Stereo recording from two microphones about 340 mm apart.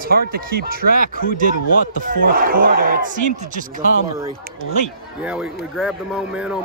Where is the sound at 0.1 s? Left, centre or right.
Right.